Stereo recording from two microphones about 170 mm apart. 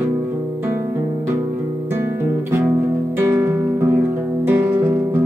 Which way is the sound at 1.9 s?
15° right (ahead or behind).